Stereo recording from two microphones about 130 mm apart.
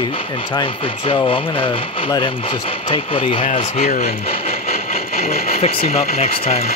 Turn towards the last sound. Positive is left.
turn(degrees=50)  # may be behind; listen again after turning